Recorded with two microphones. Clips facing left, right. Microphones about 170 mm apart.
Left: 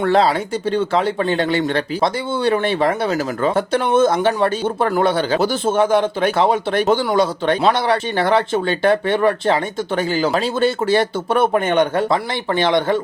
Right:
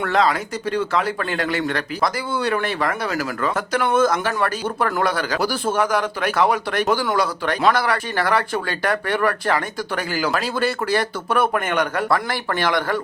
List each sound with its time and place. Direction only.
0.0 s speech: 30° left (ahead or behind)